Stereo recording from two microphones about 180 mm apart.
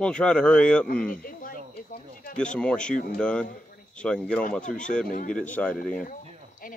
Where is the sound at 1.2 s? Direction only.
50° left (ahead or behind).